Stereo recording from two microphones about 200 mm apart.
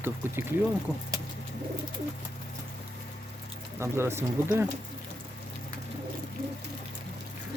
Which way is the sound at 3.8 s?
15° right (ahead or behind).